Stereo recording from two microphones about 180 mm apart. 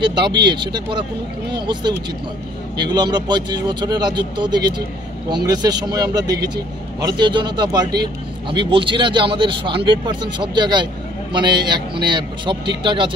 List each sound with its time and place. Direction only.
0.0 s speech: 25° right (ahead or behind)